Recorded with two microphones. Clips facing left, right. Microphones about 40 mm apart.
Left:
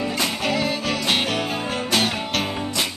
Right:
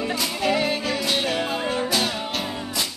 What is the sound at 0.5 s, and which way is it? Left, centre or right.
Music, right.